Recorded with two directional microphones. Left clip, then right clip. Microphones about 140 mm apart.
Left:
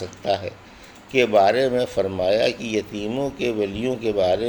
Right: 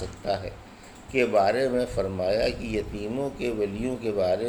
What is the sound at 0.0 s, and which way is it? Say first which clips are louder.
Speech: left 5 dB; 50° left (ahead or behind).